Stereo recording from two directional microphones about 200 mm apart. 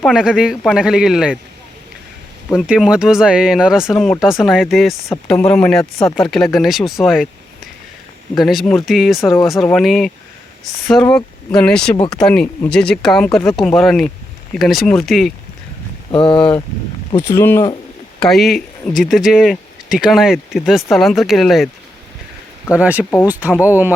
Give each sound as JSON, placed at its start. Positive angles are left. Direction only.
{"t": 0.0, "sound": "speech", "side_deg": -5}
{"t": 2.6, "sound": "speech", "side_deg": -5}
{"t": 6.1, "sound": "speech", "side_deg": 0}
{"t": 8.4, "sound": "speech", "side_deg": 0}
{"t": 16.1, "sound": "speech", "side_deg": 25}
{"t": 17.2, "sound": "speech", "side_deg": 10}
{"t": 18.2, "sound": "speech", "side_deg": 0}
{"t": 22.7, "sound": "speech", "side_deg": -5}